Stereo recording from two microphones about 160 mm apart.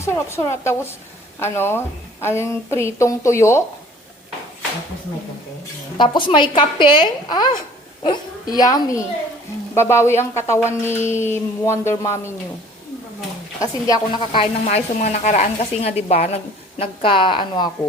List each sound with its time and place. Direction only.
0.0 s a woman's voice: 15° left (ahead or behind)
6.0 s a woman's voice: 30° left (ahead or behind)
13.6 s a woman's voice: 20° left (ahead or behind)
14.3 s speech: 45° left (ahead or behind)